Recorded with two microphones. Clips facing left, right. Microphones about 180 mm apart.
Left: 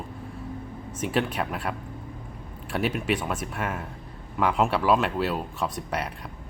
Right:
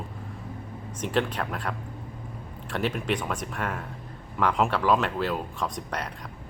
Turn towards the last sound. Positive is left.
turn(degrees=10)  # may be behind; listen again after turning